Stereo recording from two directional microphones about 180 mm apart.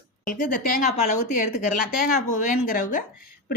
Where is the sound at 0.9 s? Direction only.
40° left (ahead or behind).